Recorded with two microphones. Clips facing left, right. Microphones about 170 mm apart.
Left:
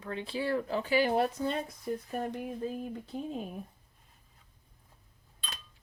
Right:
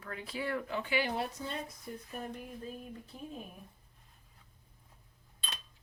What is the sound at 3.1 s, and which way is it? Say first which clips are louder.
Speech: left 10 dB; 70° left (ahead or behind).